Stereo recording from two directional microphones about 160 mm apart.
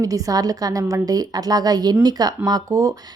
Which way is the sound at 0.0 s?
20° right (ahead or behind).